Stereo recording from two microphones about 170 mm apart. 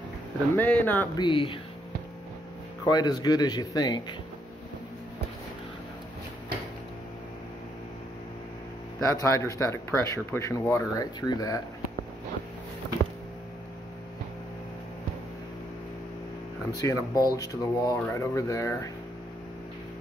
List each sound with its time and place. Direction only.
0.6 s speech: 10° left (ahead or behind)
1.1 s speech: 30° left (ahead or behind)
2.8 s speech: 25° left (ahead or behind)
9.0 s speech: 15° left (ahead or behind)
16.7 s speech: 20° left (ahead or behind)